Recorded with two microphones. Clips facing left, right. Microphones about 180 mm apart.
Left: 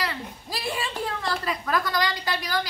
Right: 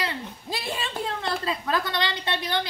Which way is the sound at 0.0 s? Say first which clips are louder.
Even; 25° right (ahead or behind).